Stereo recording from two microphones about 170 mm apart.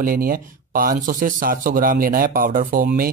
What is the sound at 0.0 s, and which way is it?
Speech, 60° right (ahead or behind).